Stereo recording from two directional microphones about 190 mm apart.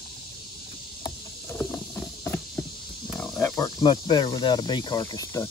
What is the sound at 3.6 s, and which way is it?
Speech, 25° left (ahead or behind).